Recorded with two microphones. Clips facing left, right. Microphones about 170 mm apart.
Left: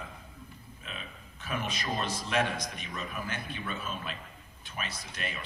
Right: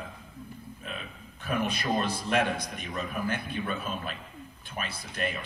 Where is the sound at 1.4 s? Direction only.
60° right (ahead or behind).